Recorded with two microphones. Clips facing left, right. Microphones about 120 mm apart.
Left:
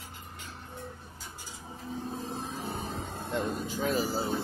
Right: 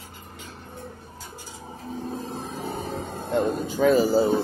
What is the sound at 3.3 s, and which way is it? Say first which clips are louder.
Speech: right 9 dB; 65° right (ahead or behind).